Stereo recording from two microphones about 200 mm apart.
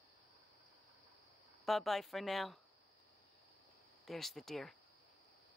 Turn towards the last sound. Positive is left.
turn(degrees=0)  # may be behind; listen again after turning